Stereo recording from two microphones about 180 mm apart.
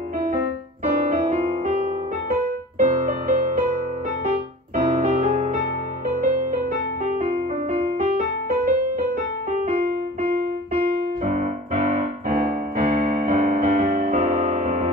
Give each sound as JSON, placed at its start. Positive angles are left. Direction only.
{"t": 0.8, "sound": "piano", "side_deg": -35}
{"t": 2.8, "sound": "music", "side_deg": -45}
{"t": 7.1, "sound": "music", "side_deg": -35}
{"t": 11.2, "sound": "piano", "side_deg": -45}